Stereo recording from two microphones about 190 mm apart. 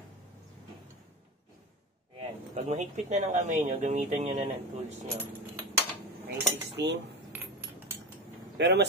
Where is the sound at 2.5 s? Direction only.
35° right (ahead or behind).